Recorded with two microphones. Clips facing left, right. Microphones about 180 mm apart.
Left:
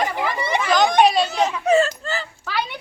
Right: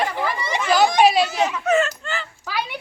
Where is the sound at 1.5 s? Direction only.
30° left (ahead or behind).